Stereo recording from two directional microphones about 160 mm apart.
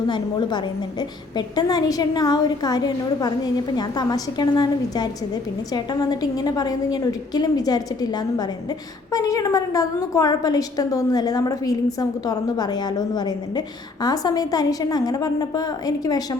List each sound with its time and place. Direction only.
0.1 s a woman's voice: 30° left (ahead or behind)